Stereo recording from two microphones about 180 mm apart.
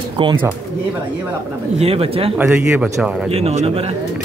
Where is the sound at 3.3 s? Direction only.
35° right (ahead or behind).